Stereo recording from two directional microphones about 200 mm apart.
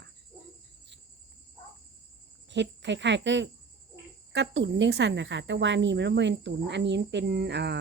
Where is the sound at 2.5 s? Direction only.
60° right (ahead or behind).